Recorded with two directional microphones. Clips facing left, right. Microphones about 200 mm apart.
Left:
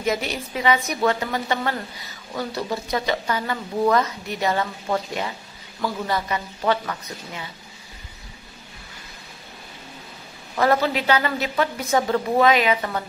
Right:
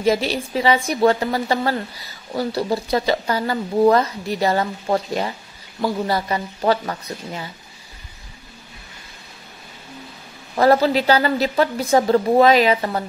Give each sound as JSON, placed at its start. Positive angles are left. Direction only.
{"t": 0.0, "sound": "speech", "side_deg": -30}
{"t": 10.5, "sound": "speech", "side_deg": -35}